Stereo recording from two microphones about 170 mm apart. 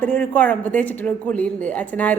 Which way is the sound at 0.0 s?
10° left (ahead or behind).